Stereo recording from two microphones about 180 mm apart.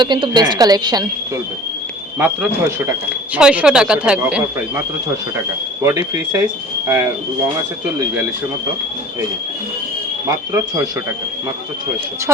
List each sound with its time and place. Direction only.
0.0 s a woman's voice: 25° right (ahead or behind)
2.1 s speech: 10° right (ahead or behind)
5.8 s a woman's voice: 20° right (ahead or behind)
10.2 s speech: 15° right (ahead or behind)